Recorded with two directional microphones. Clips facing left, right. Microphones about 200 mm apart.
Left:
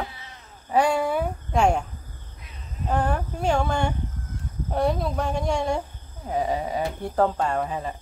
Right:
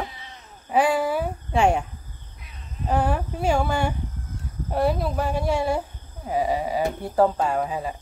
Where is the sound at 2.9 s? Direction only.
5° right (ahead or behind).